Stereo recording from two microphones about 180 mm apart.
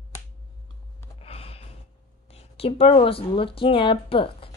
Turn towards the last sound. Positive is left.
turn(degrees=30)  # may be behind; listen again after turning